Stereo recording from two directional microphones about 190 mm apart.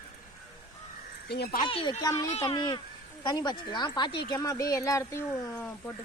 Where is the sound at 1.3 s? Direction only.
55° left (ahead or behind).